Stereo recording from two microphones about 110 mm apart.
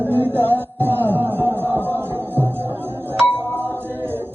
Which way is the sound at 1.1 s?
20° right (ahead or behind).